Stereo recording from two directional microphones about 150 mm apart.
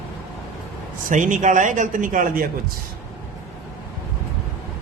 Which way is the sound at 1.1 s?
60° right (ahead or behind).